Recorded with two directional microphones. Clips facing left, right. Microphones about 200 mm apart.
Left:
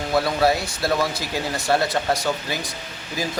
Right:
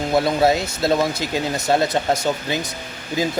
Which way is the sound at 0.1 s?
20° right (ahead or behind).